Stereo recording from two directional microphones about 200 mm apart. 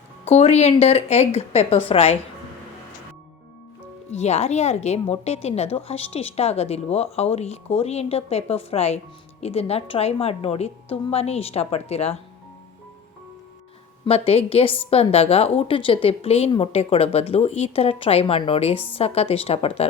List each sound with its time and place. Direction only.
0.3 s a woman's voice: 35° left (ahead or behind)
4.1 s a woman's voice: 35° left (ahead or behind)
14.0 s a woman's voice: 30° left (ahead or behind)